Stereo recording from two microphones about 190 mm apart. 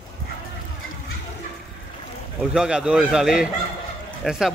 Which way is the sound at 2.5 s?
5° right (ahead or behind).